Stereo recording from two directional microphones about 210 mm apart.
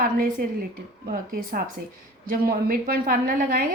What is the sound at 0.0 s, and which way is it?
A woman's voice, 45° right (ahead or behind).